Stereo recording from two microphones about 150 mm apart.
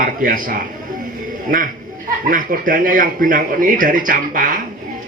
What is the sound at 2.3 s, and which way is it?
Speech, 65° right (ahead or behind).